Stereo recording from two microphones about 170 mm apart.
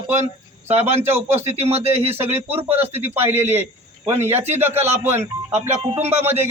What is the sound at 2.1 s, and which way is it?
Speech, 15° right (ahead or behind).